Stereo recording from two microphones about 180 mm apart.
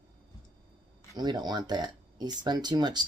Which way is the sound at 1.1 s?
25° right (ahead or behind).